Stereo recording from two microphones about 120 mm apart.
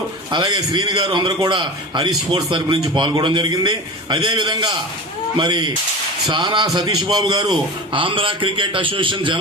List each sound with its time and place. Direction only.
0.3 s a man's voice: 35° right (ahead or behind)